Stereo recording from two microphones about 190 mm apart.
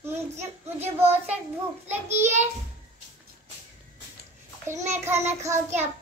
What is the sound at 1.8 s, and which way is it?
Speech, 15° right (ahead or behind).